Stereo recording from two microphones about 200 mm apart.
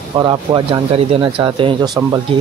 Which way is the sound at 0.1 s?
20° right (ahead or behind).